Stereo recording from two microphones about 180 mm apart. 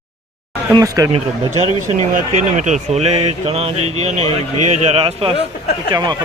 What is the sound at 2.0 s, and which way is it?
Speech, 45° right (ahead or behind).